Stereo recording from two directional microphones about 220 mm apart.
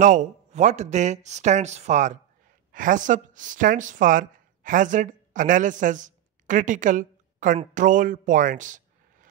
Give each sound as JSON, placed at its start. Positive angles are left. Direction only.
{"t": 0.0, "sound": "a woman's voice", "side_deg": -35}